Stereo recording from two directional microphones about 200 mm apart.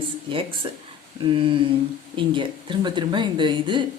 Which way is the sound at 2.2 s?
25° right (ahead or behind).